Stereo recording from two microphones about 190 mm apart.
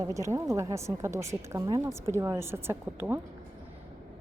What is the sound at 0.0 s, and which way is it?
Speech, 15° right (ahead or behind).